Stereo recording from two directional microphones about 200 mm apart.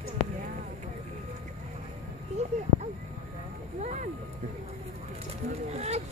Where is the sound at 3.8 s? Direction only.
35° right (ahead or behind).